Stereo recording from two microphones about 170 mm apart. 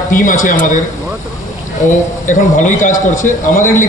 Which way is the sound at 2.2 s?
50° left (ahead or behind).